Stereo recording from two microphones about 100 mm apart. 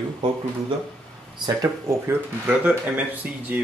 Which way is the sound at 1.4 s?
40° right (ahead or behind).